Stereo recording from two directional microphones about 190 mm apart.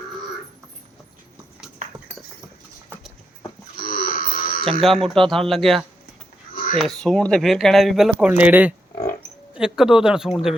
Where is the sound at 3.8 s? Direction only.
50° left (ahead or behind).